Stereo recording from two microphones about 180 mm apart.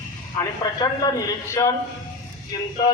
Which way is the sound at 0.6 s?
20° left (ahead or behind).